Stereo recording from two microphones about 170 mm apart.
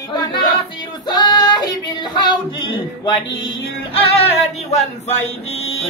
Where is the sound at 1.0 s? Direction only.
25° left (ahead or behind).